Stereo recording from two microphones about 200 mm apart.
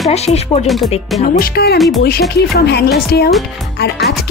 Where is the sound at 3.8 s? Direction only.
55° left (ahead or behind).